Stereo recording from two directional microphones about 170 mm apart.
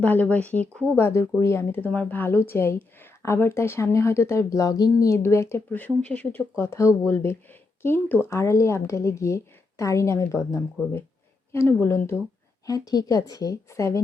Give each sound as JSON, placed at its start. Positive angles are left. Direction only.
{"t": 0.0, "sound": "speech", "side_deg": 10}